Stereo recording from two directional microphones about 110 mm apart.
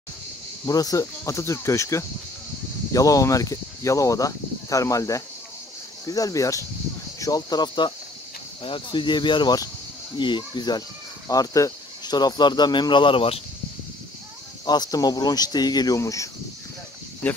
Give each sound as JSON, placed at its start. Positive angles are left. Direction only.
{"t": 0.7, "sound": "speech", "side_deg": 35}
{"t": 14.7, "sound": "speech", "side_deg": 35}
{"t": 17.2, "sound": "speech", "side_deg": 15}